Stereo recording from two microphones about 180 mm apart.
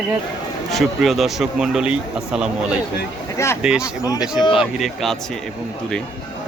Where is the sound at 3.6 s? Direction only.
5° right (ahead or behind).